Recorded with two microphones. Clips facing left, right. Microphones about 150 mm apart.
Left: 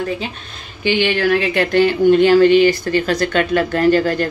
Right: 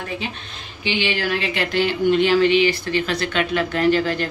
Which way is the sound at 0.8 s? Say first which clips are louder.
Left 7 dB; 55° left (ahead or behind).